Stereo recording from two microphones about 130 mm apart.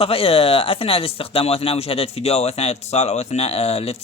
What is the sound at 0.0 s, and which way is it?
Speech, 45° left (ahead or behind).